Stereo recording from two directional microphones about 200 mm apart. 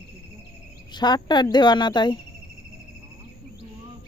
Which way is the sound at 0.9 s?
20° left (ahead or behind).